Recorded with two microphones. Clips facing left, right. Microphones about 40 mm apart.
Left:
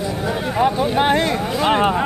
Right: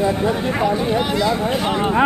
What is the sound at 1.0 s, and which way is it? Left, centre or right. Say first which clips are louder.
Speech: left 1 dB; left.